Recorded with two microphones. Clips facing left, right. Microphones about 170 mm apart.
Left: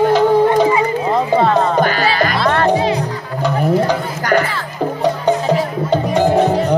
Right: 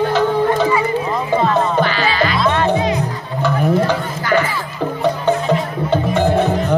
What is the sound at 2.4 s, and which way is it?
Music, 60° left (ahead or behind).